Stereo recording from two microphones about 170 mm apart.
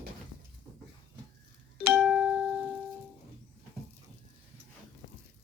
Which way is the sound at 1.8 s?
Centre (ahead or behind).